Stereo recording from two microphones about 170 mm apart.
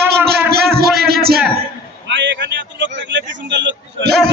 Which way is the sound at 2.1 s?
90° right.